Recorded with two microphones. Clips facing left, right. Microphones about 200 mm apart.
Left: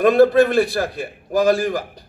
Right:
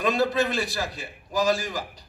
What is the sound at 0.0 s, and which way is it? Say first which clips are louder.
A man's voice: left 11 dB; 55° left (ahead or behind).